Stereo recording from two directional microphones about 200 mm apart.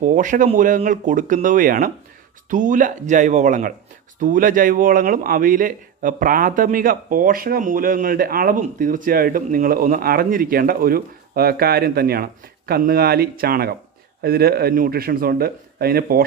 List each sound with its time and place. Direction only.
0.0 s speech: 40° right (ahead or behind)